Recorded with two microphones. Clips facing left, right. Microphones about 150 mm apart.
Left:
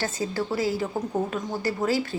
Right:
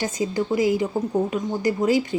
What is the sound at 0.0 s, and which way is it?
A woman's voice, 15° right (ahead or behind).